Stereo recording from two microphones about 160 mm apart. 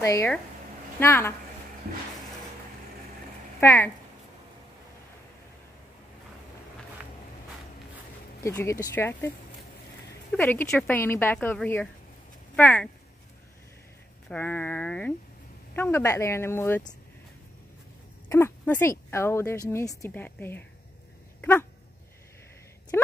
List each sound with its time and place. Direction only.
0.0 s a woman's voice: 20° left (ahead or behind)
3.6 s a woman's voice: 15° left (ahead or behind)
8.5 s a woman's voice: 20° left (ahead or behind)
10.3 s a woman's voice: 10° left (ahead or behind)
14.3 s a woman's voice: 10° left (ahead or behind)
18.3 s a woman's voice: 15° left (ahead or behind)
21.4 s dog: 10° left (ahead or behind)